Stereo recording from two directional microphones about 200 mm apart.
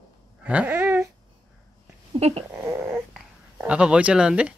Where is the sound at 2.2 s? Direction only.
30° right (ahead or behind).